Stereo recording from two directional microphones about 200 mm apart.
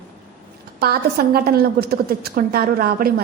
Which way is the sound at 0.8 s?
50° right (ahead or behind).